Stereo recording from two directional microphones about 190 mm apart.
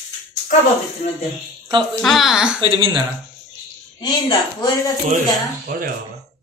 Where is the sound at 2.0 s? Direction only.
Centre (ahead or behind).